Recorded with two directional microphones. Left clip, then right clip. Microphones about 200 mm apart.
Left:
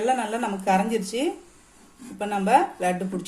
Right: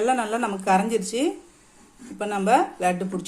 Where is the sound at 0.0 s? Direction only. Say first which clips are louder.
Right 1 dB; 20° right (ahead or behind).